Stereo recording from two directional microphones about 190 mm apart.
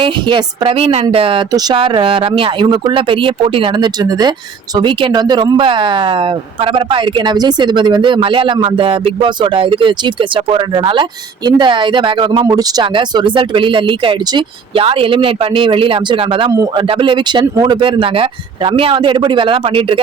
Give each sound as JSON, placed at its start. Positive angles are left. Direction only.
{"t": 0.0, "sound": "speech", "side_deg": -25}